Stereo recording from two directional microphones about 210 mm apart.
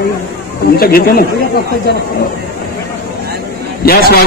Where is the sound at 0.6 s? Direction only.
45° left (ahead or behind).